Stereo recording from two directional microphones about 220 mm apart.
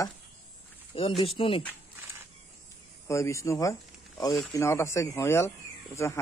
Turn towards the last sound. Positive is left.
turn(degrees=15)  # may be behind; listen again after turning